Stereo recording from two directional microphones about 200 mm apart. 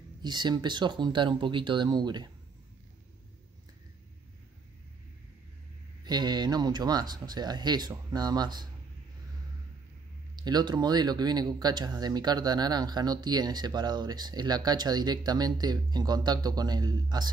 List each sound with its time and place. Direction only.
0.2 s speech: 20° right (ahead or behind)
6.0 s speech: 20° right (ahead or behind)
10.3 s speech: 20° right (ahead or behind)